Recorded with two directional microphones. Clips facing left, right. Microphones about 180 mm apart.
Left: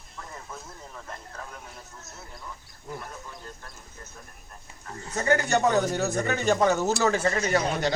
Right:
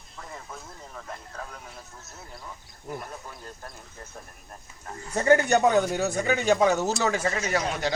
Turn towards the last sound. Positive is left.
turn(degrees=-5)  # may be behind; listen again after turning